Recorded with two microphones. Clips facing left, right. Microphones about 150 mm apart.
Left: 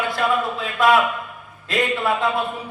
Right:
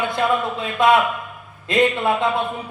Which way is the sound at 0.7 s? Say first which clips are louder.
Right 1 dB; 20° right (ahead or behind).